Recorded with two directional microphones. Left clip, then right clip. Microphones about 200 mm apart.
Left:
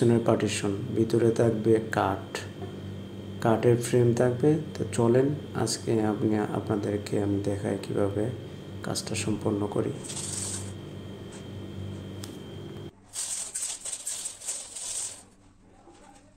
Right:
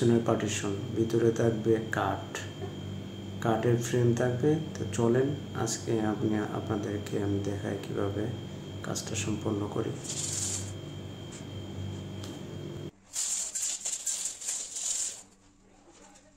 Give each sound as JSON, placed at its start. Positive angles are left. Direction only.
{"t": 0.1, "sound": "speech", "side_deg": 25}